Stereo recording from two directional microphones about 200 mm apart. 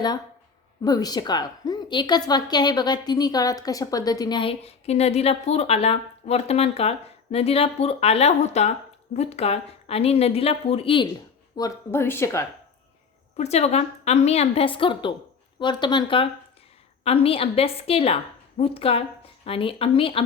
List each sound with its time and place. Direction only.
0.8 s a woman's voice: 20° left (ahead or behind)
11.5 s speech: 15° left (ahead or behind)
13.3 s a woman's voice: 35° left (ahead or behind)